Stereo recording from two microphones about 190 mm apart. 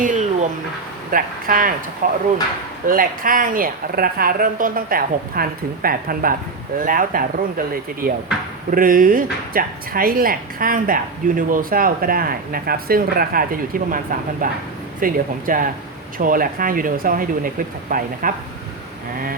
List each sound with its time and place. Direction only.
0.0 s a sound: 40° right (ahead or behind)
1.1 s speech: 45° right (ahead or behind)
8.7 s speech: 45° right (ahead or behind)